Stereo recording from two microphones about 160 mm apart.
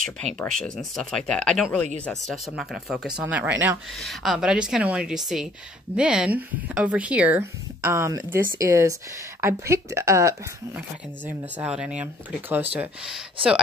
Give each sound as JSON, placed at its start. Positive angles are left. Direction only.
{"t": 0.4, "sound": "speech", "side_deg": 5}
{"t": 3.9, "sound": "speech", "side_deg": 0}